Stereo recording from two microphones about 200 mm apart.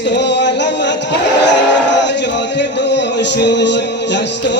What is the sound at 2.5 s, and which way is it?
Music, 60° left (ahead or behind).